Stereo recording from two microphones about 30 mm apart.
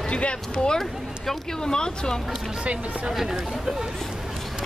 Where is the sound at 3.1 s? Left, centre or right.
Centre.